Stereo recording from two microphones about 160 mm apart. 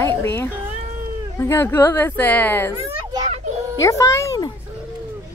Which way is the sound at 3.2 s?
45° right (ahead or behind).